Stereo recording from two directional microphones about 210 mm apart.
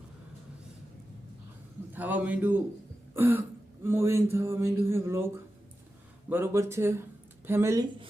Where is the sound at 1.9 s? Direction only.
10° right (ahead or behind).